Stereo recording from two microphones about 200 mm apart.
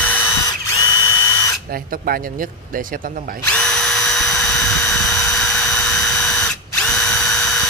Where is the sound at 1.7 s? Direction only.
45° right (ahead or behind).